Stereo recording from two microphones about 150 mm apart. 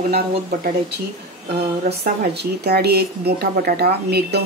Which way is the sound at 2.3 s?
90° right.